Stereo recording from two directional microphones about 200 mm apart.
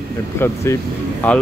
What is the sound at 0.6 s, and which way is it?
Speech, 10° left (ahead or behind).